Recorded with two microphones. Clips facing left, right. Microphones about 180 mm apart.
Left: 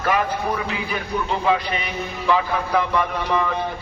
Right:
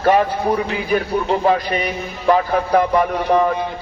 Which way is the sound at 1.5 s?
45° right (ahead or behind).